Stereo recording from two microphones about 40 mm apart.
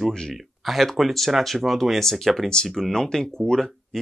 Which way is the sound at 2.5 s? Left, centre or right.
Centre.